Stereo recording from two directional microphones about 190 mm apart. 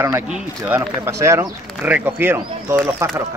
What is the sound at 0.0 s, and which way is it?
Speech, 10° right (ahead or behind).